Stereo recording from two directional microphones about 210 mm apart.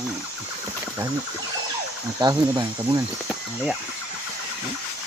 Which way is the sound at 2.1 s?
15° right (ahead or behind).